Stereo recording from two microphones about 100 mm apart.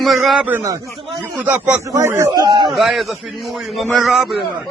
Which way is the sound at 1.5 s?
15° right (ahead or behind).